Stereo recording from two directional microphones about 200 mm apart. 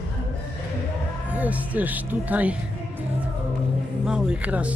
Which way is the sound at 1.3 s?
5° right (ahead or behind).